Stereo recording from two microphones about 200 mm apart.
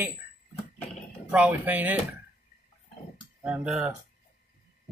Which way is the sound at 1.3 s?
5° right (ahead or behind).